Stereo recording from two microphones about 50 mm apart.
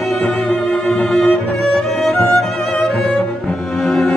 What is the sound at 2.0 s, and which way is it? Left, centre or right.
Music, centre.